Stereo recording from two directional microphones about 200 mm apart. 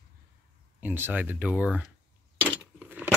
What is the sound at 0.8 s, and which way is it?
Speech, 10° right (ahead or behind).